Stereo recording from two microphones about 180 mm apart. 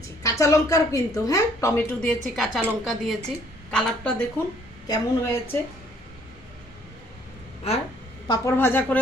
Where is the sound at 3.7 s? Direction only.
10° left (ahead or behind).